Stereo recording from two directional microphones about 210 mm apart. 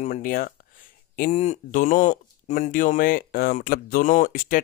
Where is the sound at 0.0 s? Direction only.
35° left (ahead or behind).